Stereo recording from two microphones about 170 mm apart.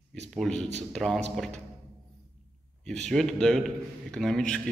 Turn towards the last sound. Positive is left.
turn(degrees=5)  # may be behind; listen again after turning